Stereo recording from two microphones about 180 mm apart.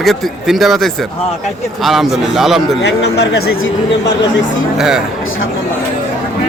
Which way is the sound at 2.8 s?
65° left (ahead or behind).